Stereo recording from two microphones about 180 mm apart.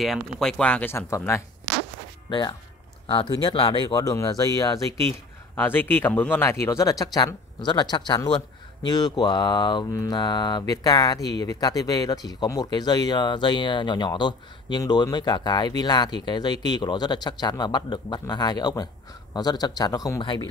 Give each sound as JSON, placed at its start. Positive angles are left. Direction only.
{"t": 0.0, "sound": "speech", "side_deg": 0}
{"t": 11.1, "sound": "speech", "side_deg": 70}
{"t": 11.4, "sound": "speech", "side_deg": 20}